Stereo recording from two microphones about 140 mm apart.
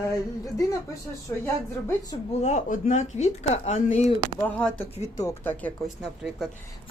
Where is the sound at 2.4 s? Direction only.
60° left (ahead or behind).